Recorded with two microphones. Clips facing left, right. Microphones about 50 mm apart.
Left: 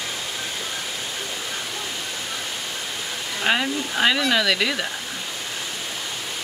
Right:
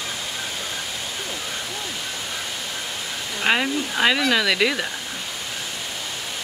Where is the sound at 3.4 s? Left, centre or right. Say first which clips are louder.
Right 1 dB; centre.